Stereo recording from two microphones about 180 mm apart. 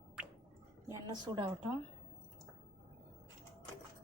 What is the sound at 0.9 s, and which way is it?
Speech, 25° right (ahead or behind).